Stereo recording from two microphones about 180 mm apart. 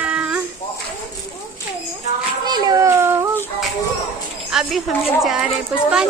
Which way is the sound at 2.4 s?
20° right (ahead or behind).